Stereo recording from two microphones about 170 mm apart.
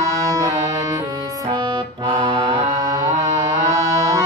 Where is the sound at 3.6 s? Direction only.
20° right (ahead or behind).